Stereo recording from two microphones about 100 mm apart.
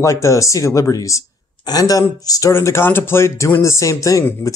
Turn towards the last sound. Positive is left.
turn(degrees=30)  # may be behind; listen again after turning